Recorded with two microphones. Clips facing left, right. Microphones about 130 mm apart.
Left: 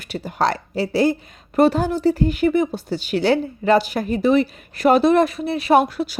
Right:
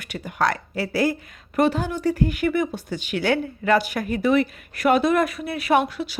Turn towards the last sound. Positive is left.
turn(degrees=40)  # may be behind; listen again after turning